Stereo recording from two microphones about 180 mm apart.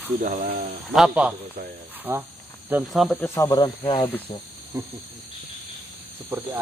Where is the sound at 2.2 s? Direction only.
10° right (ahead or behind).